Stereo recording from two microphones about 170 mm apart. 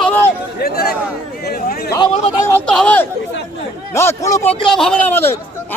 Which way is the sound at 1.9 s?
25° left (ahead or behind).